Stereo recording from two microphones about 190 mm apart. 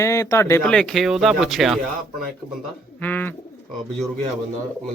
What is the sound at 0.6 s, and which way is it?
Speech, 5° left (ahead or behind).